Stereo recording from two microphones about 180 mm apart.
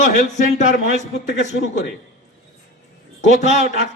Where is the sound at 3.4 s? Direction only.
40° left (ahead or behind).